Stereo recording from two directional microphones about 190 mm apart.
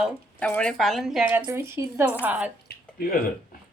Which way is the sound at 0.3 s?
5° left (ahead or behind).